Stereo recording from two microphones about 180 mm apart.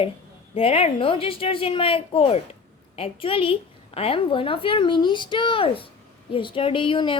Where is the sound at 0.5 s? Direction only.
30° left (ahead or behind).